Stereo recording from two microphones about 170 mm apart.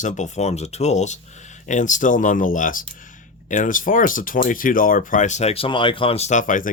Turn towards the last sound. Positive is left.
turn(degrees=50)  # may be behind; listen again after turning